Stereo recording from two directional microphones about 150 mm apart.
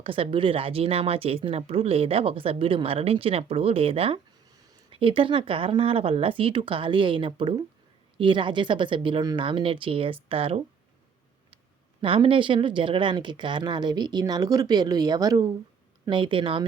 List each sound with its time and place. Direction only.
0.0 s speech: 40° right (ahead or behind)
12.0 s speech: 35° right (ahead or behind)